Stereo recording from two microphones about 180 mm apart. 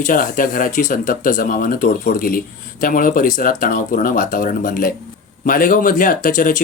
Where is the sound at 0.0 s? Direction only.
50° left (ahead or behind).